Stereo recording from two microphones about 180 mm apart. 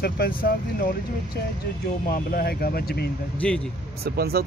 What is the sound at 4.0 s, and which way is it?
Speech, 60° right (ahead or behind).